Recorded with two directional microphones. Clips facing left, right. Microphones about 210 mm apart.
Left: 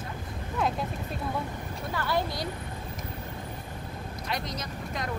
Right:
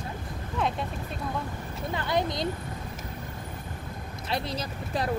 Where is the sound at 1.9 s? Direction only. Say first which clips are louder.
Right 2 dB; 20° right (ahead or behind).